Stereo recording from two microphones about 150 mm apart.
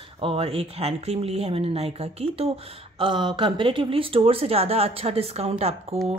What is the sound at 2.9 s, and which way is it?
Speech, 30° right (ahead or behind).